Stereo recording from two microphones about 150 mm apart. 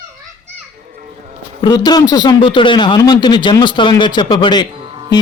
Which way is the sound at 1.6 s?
30° left (ahead or behind).